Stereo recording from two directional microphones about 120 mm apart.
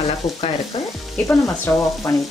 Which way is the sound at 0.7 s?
50° left (ahead or behind).